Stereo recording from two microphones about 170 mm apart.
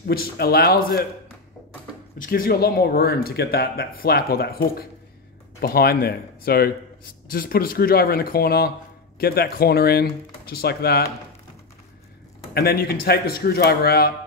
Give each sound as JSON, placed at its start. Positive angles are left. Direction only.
{"t": 0.0, "sound": "speech", "side_deg": 60}
{"t": 2.1, "sound": "speech", "side_deg": 55}
{"t": 12.5, "sound": "speech", "side_deg": 65}